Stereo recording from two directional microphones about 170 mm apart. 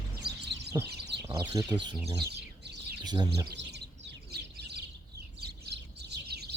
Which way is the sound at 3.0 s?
25° right (ahead or behind).